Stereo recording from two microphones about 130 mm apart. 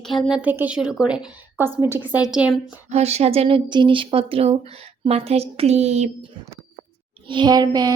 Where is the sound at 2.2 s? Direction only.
5° right (ahead or behind).